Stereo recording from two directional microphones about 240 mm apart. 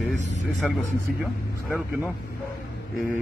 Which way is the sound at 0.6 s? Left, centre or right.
Centre.